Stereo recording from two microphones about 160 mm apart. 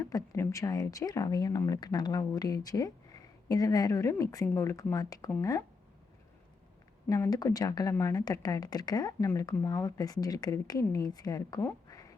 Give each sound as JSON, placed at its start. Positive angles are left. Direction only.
{"t": 0.0, "sound": "speech", "side_deg": 20}
{"t": 7.1, "sound": "speech", "side_deg": 20}